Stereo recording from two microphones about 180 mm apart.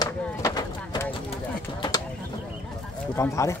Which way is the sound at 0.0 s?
20° left (ahead or behind).